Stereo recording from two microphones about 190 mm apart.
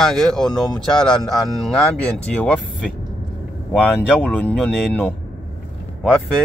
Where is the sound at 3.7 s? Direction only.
5° left (ahead or behind).